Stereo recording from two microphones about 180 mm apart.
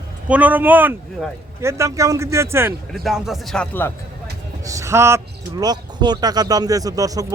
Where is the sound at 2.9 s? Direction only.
Centre (ahead or behind).